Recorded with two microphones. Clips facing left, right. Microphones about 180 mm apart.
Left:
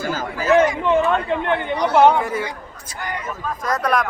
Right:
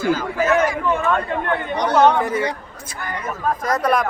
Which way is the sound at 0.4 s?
25° left (ahead or behind).